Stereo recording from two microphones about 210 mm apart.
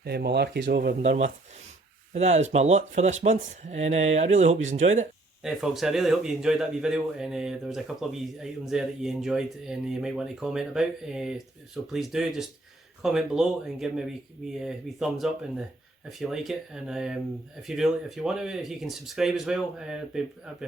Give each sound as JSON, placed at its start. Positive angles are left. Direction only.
{"t": 0.0, "sound": "speech", "side_deg": -50}
{"t": 1.0, "sound": "speech", "side_deg": -35}
{"t": 5.4, "sound": "speech", "side_deg": -5}